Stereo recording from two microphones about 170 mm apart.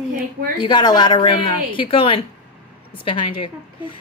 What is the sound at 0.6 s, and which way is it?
A woman's voice, 25° left (ahead or behind).